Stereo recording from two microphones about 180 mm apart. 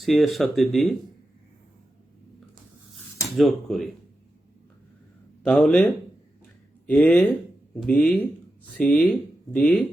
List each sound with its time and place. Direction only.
0.0 s speech: centre (ahead or behind)
3.3 s speech: centre (ahead or behind)
5.4 s speech: 5° left (ahead or behind)